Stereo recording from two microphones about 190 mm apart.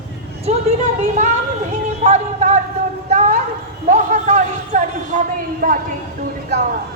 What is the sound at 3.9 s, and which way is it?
A man's voice, 40° right (ahead or behind).